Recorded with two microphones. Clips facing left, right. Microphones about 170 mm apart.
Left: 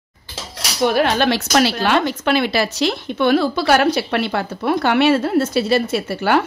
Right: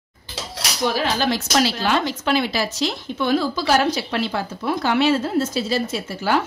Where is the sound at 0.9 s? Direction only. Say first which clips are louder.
Left 5 dB; 65° left (ahead or behind).